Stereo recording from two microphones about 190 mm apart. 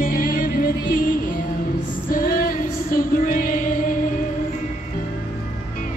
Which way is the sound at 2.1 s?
50° left (ahead or behind).